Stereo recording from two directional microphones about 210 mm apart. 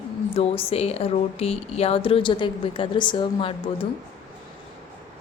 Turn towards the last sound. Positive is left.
turn(degrees=25)  # may be behind; listen again after turning